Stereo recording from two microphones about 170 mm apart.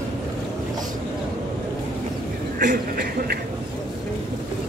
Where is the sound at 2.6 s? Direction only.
55° right (ahead or behind).